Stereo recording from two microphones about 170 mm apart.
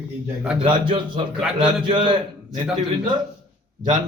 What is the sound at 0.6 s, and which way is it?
Speech, 30° right (ahead or behind).